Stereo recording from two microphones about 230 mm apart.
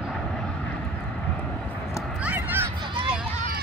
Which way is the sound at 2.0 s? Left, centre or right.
Centre.